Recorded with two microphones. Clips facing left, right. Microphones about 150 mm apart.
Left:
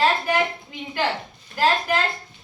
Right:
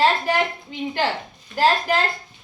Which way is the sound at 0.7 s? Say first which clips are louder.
Right 2 dB; 25° right (ahead or behind).